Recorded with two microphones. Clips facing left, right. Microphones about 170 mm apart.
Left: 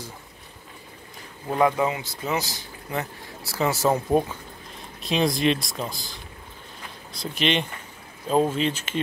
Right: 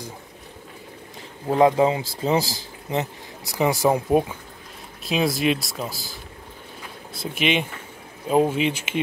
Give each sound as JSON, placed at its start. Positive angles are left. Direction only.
{"t": 1.5, "sound": "speech", "side_deg": -25}
{"t": 7.2, "sound": "speech", "side_deg": -5}